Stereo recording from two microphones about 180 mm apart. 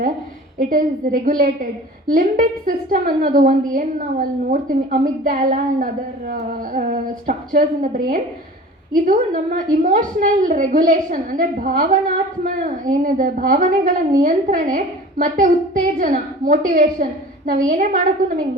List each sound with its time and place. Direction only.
0.6 s a woman's voice: 50° right (ahead or behind)